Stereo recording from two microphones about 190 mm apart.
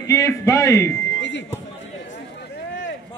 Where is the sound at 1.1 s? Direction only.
65° left (ahead or behind).